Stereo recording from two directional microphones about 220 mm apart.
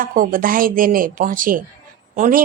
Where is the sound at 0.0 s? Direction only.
40° right (ahead or behind).